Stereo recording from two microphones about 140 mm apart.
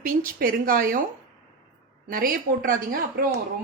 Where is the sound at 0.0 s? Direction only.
75° right (ahead or behind).